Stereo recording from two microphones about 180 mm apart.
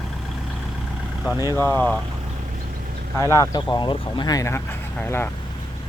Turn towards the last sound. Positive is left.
turn(degrees=10)  # may be behind; listen again after turning